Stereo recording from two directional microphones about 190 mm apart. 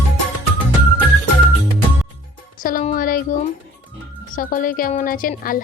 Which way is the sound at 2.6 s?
45° left (ahead or behind).